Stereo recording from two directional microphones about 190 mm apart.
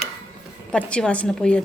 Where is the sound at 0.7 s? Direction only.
5° left (ahead or behind).